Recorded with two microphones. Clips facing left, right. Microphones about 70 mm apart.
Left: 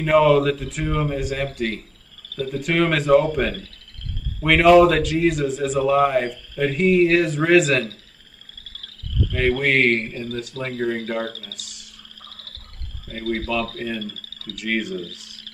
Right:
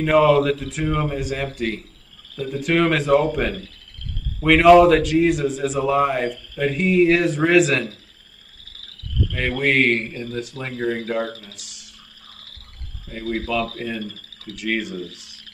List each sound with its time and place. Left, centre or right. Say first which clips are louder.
0.0 s a man's voice: even; centre
9.3 s a man's voice: left 2 dB; centre
11.2 s speech: even; right
11.5 s a man's voice: left 3 dB; centre
13.1 s a man's voice: even; centre